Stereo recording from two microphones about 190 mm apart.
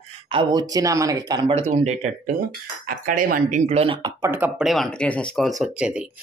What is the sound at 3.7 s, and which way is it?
Speech, 30° right (ahead or behind).